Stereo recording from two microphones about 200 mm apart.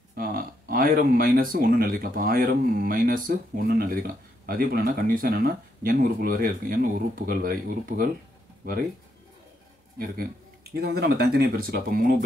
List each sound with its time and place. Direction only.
0.1 s speech: 45° right (ahead or behind)
9.9 s speech: 50° right (ahead or behind)